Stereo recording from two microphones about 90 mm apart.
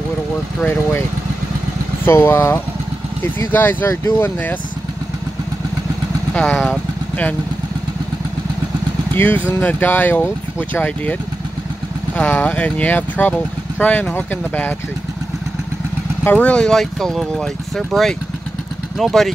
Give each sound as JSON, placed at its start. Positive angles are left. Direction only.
{"t": 2.0, "sound": "speech", "side_deg": 25}
{"t": 6.3, "sound": "speech", "side_deg": 20}
{"t": 9.1, "sound": "speech", "side_deg": 20}
{"t": 12.4, "sound": "speech", "side_deg": 15}
{"t": 16.3, "sound": "speech", "side_deg": 15}